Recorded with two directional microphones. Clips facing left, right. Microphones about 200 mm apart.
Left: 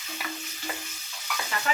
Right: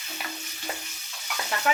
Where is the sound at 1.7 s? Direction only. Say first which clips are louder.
Right 4 dB; 65° right (ahead or behind).